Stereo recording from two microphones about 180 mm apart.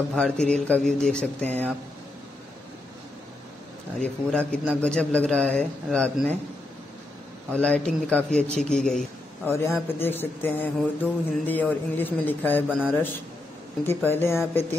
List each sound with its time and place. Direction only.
0.1 s speech: 5° left (ahead or behind)
4.0 s speech: 5° left (ahead or behind)
7.5 s a man's voice: 5° left (ahead or behind)
9.5 s speech: 15° left (ahead or behind)
12.6 s speech: 5° right (ahead or behind)
13.8 s speech: 10° left (ahead or behind)